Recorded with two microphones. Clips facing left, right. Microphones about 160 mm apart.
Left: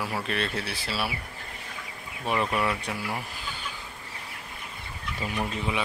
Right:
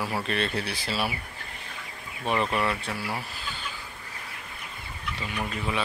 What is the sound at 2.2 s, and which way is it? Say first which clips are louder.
Speech: even; 5° left (ahead or behind).